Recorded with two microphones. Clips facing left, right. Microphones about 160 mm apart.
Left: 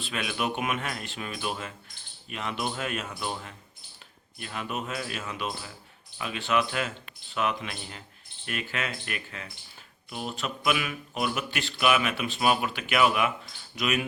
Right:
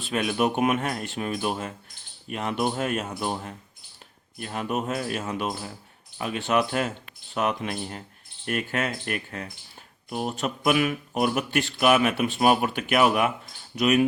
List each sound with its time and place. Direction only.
0.0 s speech: 45° right (ahead or behind)
4.4 s speech: 45° right (ahead or behind)